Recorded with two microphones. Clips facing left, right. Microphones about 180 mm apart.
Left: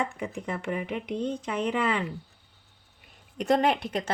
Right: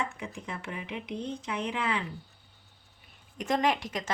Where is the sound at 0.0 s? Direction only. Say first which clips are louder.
Left 5 dB; 55° left (ahead or behind).